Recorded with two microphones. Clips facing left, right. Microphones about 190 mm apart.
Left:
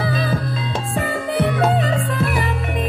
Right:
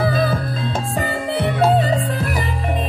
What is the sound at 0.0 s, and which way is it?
Music, 45° right (ahead or behind).